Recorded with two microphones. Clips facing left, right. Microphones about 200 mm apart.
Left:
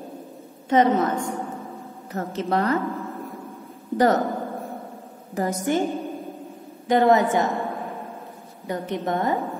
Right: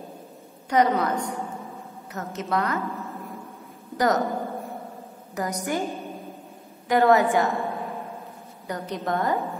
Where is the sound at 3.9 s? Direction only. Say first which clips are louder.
Left 4 dB; 30° left (ahead or behind).